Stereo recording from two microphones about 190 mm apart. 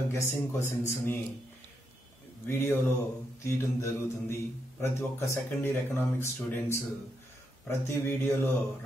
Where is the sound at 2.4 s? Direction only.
10° left (ahead or behind).